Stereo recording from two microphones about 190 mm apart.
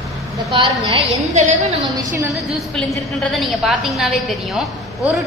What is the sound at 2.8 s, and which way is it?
A woman's voice, centre (ahead or behind).